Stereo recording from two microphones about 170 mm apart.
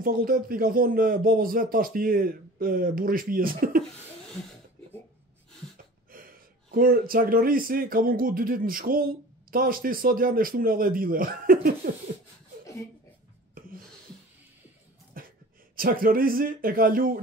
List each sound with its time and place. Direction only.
0.0 s speech: 55° right (ahead or behind)
6.1 s speech: 55° right (ahead or behind)
15.1 s speech: 55° right (ahead or behind)